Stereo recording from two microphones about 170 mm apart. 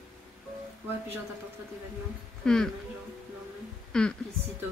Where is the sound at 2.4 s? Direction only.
5° left (ahead or behind).